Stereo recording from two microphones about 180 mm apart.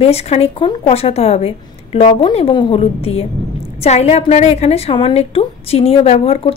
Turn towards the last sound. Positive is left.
turn(degrees=35)  # may be behind; listen again after turning